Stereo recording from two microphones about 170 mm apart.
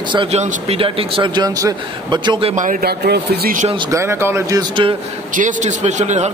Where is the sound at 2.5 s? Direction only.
50° right (ahead or behind); by 3.5 s 65° right (ahead or behind).